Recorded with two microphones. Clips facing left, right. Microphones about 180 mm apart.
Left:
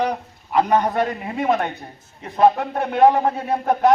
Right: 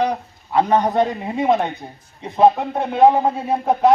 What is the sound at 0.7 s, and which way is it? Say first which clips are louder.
A man's voice: right 2 dB; 20° right (ahead or behind).